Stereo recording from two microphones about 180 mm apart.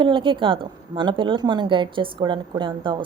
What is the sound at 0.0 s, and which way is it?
A woman's voice, 25° right (ahead or behind).